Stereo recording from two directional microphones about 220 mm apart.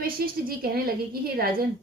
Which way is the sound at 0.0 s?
40° right (ahead or behind).